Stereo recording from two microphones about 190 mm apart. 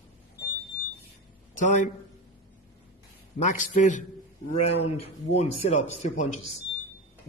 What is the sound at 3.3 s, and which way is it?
Speech, 40° left (ahead or behind).